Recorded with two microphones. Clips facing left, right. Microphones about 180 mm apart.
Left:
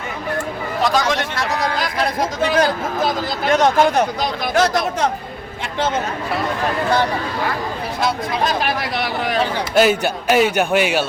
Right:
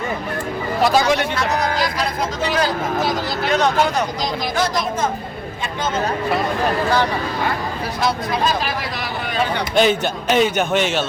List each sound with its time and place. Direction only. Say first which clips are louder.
0.8 s speech: right 2 dB; 5° right (ahead or behind)
1.8 s speech: left 1 dB; 50° left (ahead or behind)
4.5 s speech: left 6 dB; 70° left (ahead or behind)
8.6 s speech: left 3 dB; 70° left (ahead or behind)
9.7 s a man's voice: left 2 dB; 5° left (ahead or behind)